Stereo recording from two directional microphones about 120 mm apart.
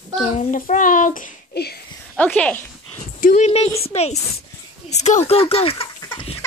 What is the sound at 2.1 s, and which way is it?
Speech, 10° left (ahead or behind).